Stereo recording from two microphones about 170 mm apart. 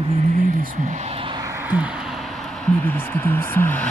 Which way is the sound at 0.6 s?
50° right (ahead or behind).